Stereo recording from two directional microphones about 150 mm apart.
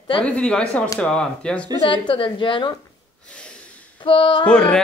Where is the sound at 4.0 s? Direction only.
35° left (ahead or behind).